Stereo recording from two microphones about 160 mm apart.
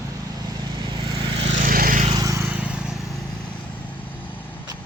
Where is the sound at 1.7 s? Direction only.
60° right (ahead or behind).